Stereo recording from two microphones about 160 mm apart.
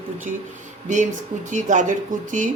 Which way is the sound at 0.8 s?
50° right (ahead or behind).